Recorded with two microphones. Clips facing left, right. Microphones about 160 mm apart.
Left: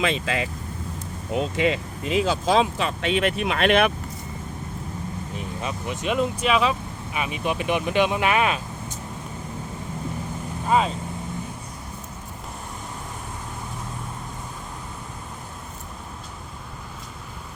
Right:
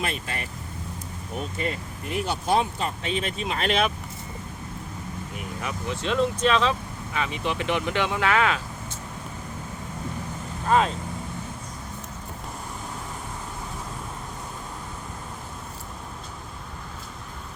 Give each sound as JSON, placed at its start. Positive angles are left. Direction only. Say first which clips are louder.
{"t": 0.0, "sound": "speech", "louder": "left 7 dB", "side_deg": 90}
{"t": 5.4, "sound": "speech", "louder": "left 2 dB", "side_deg": 20}
{"t": 10.7, "sound": "speech", "louder": "even", "side_deg": 5}